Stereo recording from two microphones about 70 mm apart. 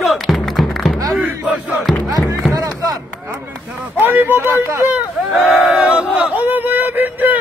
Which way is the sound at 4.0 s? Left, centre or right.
Right.